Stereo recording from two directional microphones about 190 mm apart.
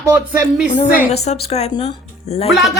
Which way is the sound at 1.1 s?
35° left (ahead or behind).